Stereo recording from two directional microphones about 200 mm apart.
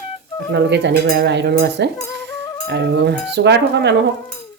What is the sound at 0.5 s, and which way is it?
Speech, 60° right (ahead or behind).